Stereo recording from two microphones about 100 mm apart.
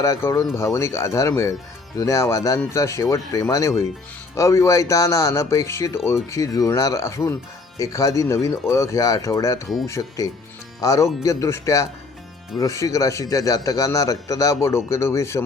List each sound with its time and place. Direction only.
0.0 s a man's voice: 30° left (ahead or behind)